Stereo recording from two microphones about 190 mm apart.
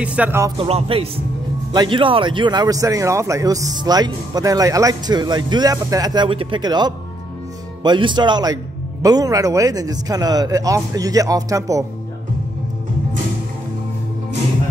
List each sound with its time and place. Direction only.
0.0 s speech: 5° right (ahead or behind)
0.6 s a man's voice: 30° right (ahead or behind)